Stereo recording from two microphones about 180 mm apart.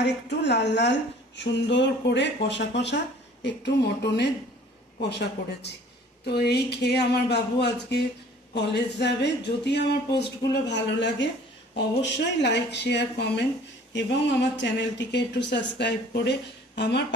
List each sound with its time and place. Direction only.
0.0 s speech: 70° left (ahead or behind)
6.2 s speech: 65° left (ahead or behind)